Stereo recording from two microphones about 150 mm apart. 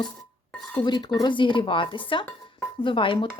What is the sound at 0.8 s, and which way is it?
Dishes, 30° left (ahead or behind).